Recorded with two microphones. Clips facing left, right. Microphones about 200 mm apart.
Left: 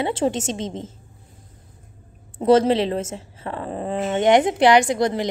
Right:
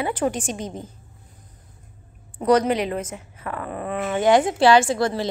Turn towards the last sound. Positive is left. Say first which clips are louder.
# left 1 dB
turn(degrees=20)  # may be behind; listen again after turning